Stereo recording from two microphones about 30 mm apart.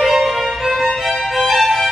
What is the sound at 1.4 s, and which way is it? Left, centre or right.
Music, centre.